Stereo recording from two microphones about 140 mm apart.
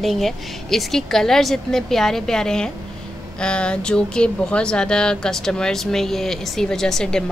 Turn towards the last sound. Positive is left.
turn(degrees=5)  # may be behind; listen again after turning